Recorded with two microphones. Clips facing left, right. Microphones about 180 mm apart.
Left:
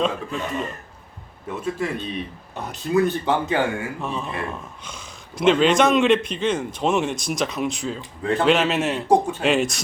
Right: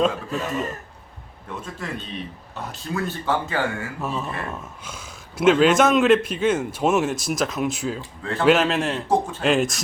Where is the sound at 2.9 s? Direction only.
20° left (ahead or behind).